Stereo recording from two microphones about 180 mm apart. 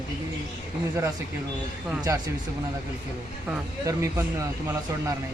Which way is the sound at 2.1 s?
15° right (ahead or behind).